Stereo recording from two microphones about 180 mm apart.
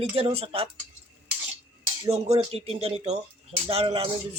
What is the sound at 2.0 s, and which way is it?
Speech, 35° right (ahead or behind).